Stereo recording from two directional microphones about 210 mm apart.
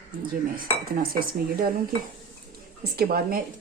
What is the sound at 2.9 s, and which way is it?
Speech, 45° right (ahead or behind).